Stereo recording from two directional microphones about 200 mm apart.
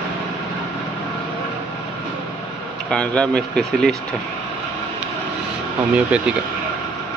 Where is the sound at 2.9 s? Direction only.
5° left (ahead or behind).